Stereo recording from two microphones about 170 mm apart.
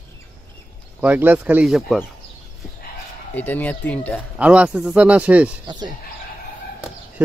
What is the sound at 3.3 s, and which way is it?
Speech, 10° left (ahead or behind).